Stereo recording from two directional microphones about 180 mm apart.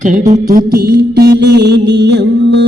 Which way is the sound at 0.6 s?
55° right (ahead or behind).